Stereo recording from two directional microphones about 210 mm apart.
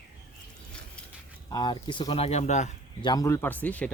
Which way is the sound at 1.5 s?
20° left (ahead or behind).